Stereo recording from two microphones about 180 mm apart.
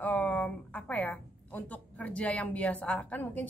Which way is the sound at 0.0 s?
10° left (ahead or behind).